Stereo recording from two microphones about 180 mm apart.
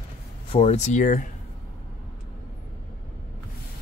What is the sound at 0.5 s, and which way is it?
Speech, 40° left (ahead or behind).